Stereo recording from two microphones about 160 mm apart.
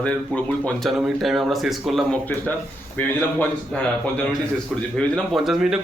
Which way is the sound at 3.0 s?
10° left (ahead or behind).